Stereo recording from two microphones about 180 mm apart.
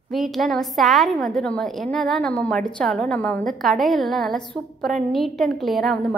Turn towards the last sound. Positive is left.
turn(degrees=0)  # may be behind; listen again after turning